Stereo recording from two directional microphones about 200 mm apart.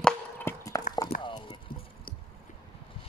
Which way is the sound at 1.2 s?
25° left (ahead or behind).